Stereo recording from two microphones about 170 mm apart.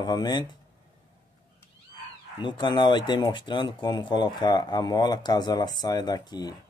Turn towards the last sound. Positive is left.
turn(degrees=25)  # may be behind; listen again after turning